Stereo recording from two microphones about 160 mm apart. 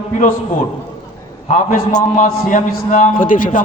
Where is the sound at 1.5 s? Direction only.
55° left (ahead or behind).